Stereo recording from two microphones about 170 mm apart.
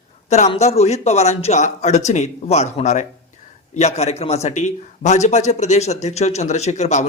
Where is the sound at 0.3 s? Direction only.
40° left (ahead or behind).